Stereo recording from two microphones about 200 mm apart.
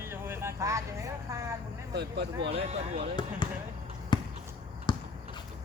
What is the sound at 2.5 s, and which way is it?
Speech, 30° right (ahead or behind).